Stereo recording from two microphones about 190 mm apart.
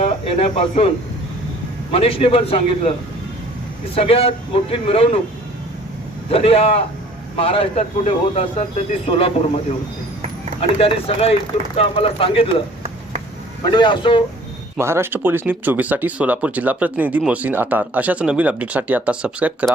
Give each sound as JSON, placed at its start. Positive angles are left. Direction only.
{"t": 0.0, "sound": "speech", "side_deg": 30}
{"t": 3.9, "sound": "speech", "side_deg": 30}
{"t": 6.3, "sound": "speech", "side_deg": 30}
{"t": 10.6, "sound": "speech", "side_deg": 30}
{"t": 13.7, "sound": "speech", "side_deg": 25}
{"t": 14.8, "sound": "speech", "side_deg": -15}